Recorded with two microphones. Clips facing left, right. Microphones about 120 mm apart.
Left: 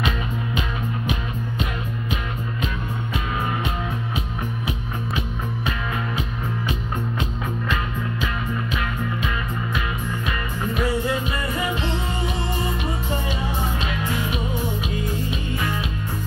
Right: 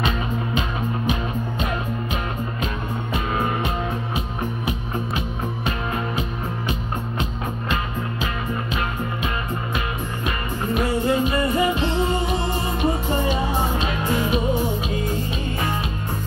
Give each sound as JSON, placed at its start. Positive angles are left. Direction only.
{"t": 11.1, "sound": "music", "side_deg": -35}